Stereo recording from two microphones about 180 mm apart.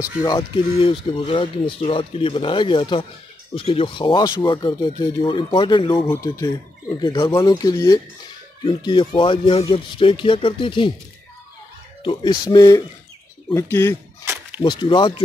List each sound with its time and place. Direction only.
0.2 s speech: 20° left (ahead or behind)
6.0 s speech: 15° left (ahead or behind)
12.0 s speech: 25° left (ahead or behind)
14.6 s speech: 25° left (ahead or behind)